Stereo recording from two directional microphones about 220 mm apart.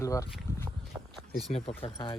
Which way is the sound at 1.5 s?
25° left (ahead or behind).